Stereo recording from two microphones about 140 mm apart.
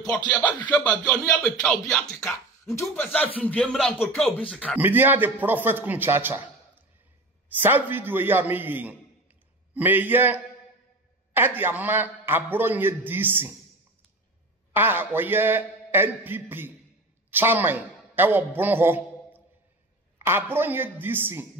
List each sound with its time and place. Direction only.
0.3 s speech: 10° left (ahead or behind)
2.7 s speech: 20° left (ahead or behind)
3.0 s speech: 10° left (ahead or behind)
4.7 s a man's voice: 15° right (ahead or behind)
14.7 s a man's voice: 15° right (ahead or behind)